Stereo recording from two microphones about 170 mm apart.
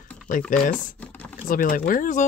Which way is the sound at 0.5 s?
50° left (ahead or behind).